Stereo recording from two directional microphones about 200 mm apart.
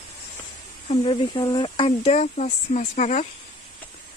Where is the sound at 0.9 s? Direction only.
25° left (ahead or behind).